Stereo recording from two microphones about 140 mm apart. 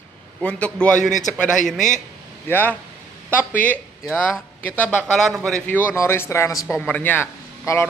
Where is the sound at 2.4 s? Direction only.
15° left (ahead or behind).